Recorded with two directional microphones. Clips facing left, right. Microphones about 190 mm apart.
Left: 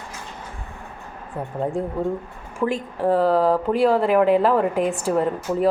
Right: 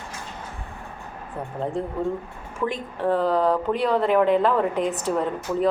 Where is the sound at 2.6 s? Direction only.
20° left (ahead or behind).